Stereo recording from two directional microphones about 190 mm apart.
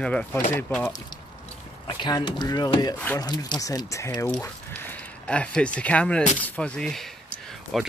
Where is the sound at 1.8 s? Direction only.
25° left (ahead or behind).